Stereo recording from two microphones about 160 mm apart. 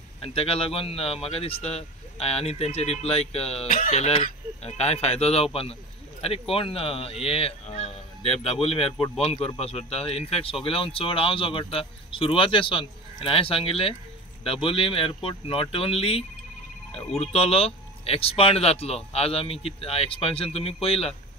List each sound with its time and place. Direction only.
0.2 s speech: 35° left (ahead or behind)